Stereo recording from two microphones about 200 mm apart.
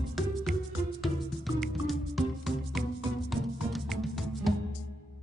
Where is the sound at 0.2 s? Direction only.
Centre (ahead or behind).